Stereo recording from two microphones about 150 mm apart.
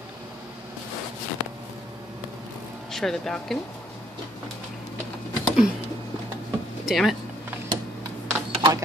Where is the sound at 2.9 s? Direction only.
Centre (ahead or behind).